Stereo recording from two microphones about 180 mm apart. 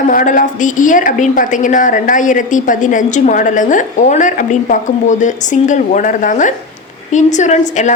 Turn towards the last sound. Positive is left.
turn(degrees=40)  # may be behind; listen again after turning